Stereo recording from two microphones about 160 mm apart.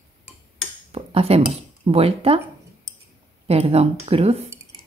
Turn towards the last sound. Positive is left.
turn(degrees=-40)  # may be behind; listen again after turning